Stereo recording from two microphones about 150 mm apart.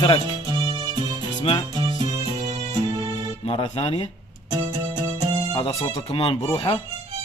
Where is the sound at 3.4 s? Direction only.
40° left (ahead or behind).